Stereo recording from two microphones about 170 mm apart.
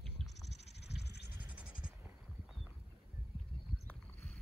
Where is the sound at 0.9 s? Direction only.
80° left.